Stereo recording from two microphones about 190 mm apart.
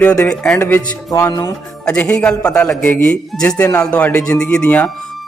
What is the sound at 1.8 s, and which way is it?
A man's voice, 5° left (ahead or behind).